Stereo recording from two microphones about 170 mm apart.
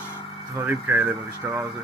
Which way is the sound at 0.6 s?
10° right (ahead or behind).